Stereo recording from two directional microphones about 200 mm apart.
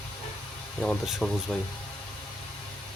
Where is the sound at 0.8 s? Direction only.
Centre (ahead or behind).